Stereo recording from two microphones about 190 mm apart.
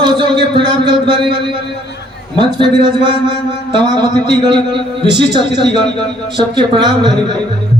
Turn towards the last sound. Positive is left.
turn(degrees=-25)  # may be behind; listen again after turning